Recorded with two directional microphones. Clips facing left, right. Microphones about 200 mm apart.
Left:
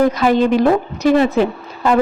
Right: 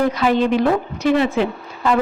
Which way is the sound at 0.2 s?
45° left (ahead or behind).